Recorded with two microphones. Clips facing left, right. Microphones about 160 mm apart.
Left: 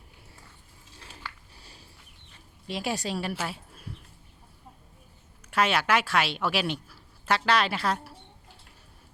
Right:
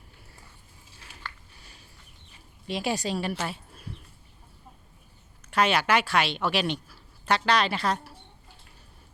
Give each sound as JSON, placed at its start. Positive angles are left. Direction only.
{"t": 1.5, "sound": "a sound", "side_deg": 35}
{"t": 2.6, "sound": "speech", "side_deg": 0}
{"t": 5.5, "sound": "speech", "side_deg": 0}